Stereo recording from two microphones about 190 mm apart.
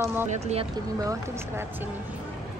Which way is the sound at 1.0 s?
15° right (ahead or behind).